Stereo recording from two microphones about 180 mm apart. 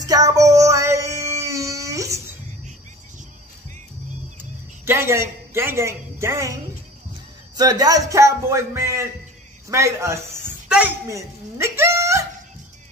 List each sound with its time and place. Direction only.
0.0 s child singing: 20° right (ahead or behind)
4.8 s a woman's voice: 15° right (ahead or behind)
7.5 s speech: 20° right (ahead or behind)
9.7 s a sound: 15° right (ahead or behind)